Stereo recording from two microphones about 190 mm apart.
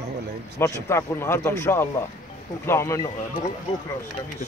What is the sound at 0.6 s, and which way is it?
Speech, 15° left (ahead or behind).